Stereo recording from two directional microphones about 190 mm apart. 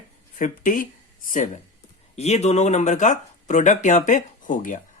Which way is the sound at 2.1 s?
35° left (ahead or behind).